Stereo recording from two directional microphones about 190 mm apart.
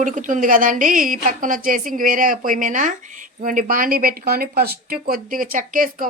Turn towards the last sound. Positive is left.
turn(degrees=-45)  # may be behind; listen again after turning